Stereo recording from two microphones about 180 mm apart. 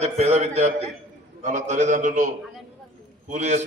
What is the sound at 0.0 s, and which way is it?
A man's voice, 40° right (ahead or behind).